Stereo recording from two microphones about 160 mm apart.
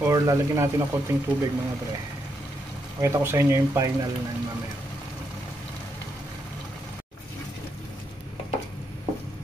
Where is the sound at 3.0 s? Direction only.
15° right (ahead or behind).